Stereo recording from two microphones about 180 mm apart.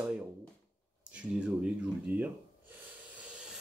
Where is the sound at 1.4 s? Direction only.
5° right (ahead or behind).